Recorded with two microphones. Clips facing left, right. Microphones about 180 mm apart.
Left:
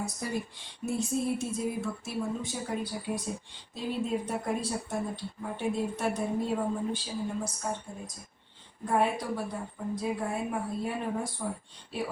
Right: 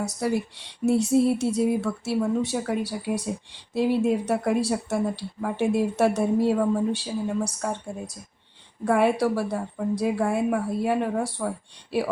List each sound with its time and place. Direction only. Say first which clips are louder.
0.0 s speech: right 8 dB; 75° right (ahead or behind)
8.8 s speech: right 7 dB; 80° right